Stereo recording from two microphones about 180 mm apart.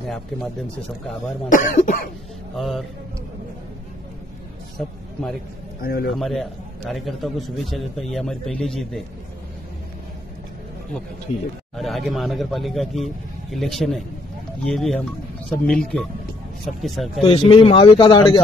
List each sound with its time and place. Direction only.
1.5 s cough: 45° left (ahead or behind)
2.5 s a man's voice: centre (ahead or behind)
4.8 s a man's voice: 5° left (ahead or behind)
5.8 s a man's voice: 60° left (ahead or behind)
6.0 s a man's voice: centre (ahead or behind)
11.7 s a man's voice: centre (ahead or behind)
17.2 s speech: 30° left (ahead or behind)